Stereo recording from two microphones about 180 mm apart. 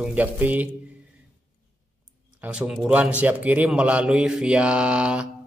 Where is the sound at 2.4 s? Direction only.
5° right (ahead or behind).